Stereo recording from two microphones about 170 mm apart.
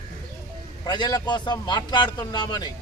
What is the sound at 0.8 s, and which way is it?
A man's voice, 25° left (ahead or behind).